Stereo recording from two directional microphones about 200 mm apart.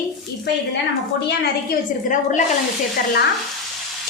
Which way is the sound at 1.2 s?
55° left (ahead or behind).